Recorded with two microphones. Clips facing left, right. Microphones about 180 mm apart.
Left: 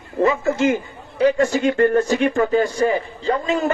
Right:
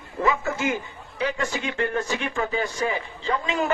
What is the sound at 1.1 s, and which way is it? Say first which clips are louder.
Speech: left 10 dB; 45° left (ahead or behind).